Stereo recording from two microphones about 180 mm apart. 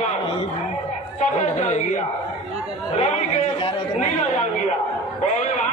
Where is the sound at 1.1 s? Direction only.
40° left (ahead or behind).